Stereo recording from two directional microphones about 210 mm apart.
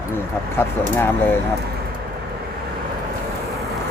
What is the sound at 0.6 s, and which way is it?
Speech, 10° left (ahead or behind).